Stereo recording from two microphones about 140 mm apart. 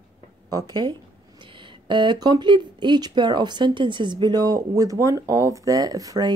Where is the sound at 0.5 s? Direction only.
30° right (ahead or behind).